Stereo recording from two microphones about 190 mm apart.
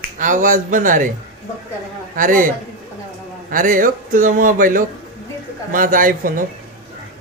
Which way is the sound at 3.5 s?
45° right (ahead or behind).